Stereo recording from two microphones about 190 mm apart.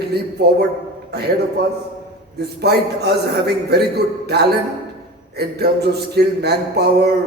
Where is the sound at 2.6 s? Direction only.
60° right (ahead or behind).